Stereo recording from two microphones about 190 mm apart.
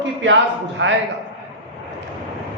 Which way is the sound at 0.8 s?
75° right (ahead or behind).